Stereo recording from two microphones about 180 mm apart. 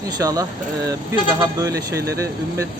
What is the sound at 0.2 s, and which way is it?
Speech, 20° right (ahead or behind).